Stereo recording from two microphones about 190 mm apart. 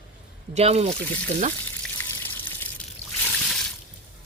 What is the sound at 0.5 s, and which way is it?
Speech, 35° right (ahead or behind).